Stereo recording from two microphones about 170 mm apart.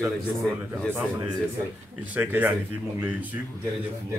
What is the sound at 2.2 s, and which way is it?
Speech, 10° right (ahead or behind).